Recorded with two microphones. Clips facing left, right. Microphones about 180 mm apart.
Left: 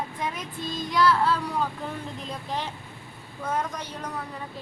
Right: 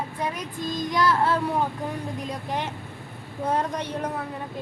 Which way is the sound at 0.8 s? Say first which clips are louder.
Left 1 dB; 45° right (ahead or behind).